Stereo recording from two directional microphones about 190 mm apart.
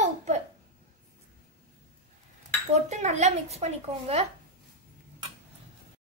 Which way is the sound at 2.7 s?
35° right (ahead or behind).